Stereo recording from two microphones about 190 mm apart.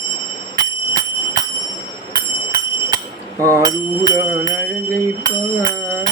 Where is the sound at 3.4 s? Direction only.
15° right (ahead or behind).